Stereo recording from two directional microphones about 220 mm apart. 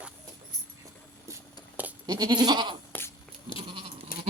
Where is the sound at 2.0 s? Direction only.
20° right (ahead or behind).